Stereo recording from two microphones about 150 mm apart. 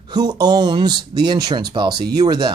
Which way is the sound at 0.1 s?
25° right (ahead or behind).